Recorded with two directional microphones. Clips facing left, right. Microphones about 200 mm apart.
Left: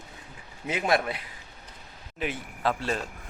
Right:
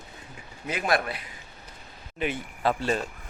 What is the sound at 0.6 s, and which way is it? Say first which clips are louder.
Speech: left 1 dB; 25° left (ahead or behind).